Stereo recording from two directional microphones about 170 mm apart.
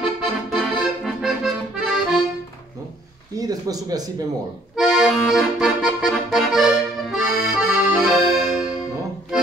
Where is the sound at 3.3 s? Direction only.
20° right (ahead or behind).